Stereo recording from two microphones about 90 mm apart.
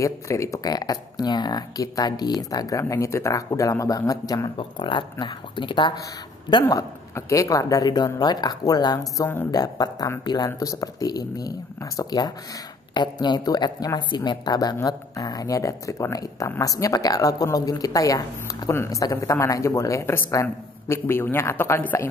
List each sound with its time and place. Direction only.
0.0 s speech: 35° left (ahead or behind)
4.6 s speech: 70° left (ahead or behind)
6.6 s speech: 35° left (ahead or behind)
12.9 s speech: 55° left (ahead or behind)
14.8 s speech: 40° left (ahead or behind)